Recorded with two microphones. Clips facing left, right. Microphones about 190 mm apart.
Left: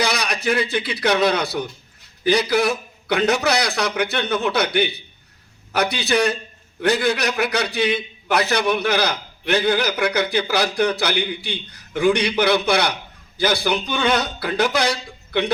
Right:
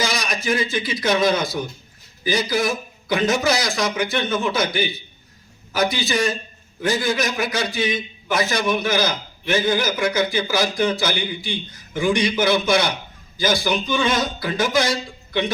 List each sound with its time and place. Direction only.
0.0 s a man's voice: 65° left (ahead or behind)